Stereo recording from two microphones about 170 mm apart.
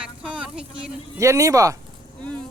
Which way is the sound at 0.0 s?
5° right (ahead or behind).